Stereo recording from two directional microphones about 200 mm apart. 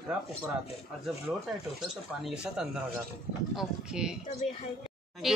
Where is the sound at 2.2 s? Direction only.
5° right (ahead or behind).